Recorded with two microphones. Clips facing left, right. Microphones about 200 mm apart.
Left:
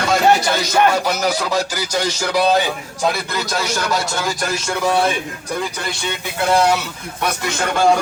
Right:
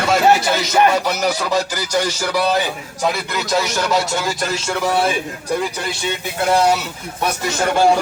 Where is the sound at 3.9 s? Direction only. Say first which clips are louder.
Right 2 dB; 5° right (ahead or behind).